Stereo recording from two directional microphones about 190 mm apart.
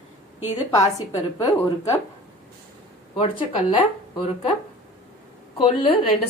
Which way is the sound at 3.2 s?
25° left (ahead or behind).